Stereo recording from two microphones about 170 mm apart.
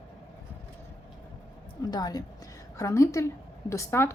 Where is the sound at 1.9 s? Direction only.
25° left (ahead or behind).